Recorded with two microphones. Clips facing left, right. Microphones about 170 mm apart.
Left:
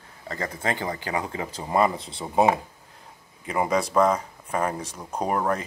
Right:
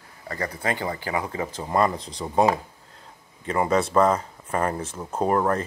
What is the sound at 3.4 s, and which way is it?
Speech, 15° left (ahead or behind).